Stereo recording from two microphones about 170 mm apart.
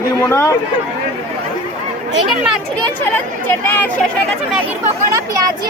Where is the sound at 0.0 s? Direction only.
15° left (ahead or behind).